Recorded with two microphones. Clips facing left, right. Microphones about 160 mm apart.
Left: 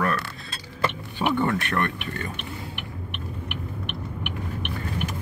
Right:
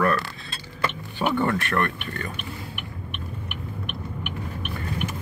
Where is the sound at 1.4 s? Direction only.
20° left (ahead or behind).